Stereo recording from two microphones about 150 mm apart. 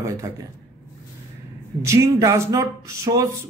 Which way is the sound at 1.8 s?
20° right (ahead or behind).